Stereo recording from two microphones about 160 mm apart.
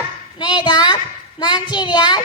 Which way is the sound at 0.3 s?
25° left (ahead or behind).